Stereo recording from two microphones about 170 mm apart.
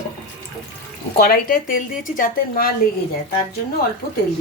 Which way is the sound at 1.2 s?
60° left (ahead or behind).